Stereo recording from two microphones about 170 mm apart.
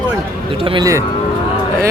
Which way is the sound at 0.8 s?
20° right (ahead or behind).